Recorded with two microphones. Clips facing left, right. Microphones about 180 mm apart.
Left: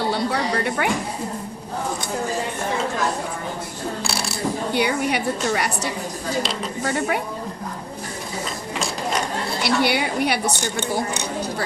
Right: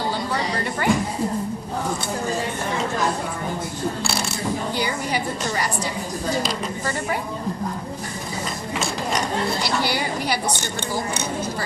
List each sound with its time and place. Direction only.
0.8 s a woman's voice: 65° left (ahead or behind)
4.0 s coin: 35° left (ahead or behind)
4.7 s a woman's voice: 65° left (ahead or behind)
9.6 s a woman's voice: 65° left (ahead or behind)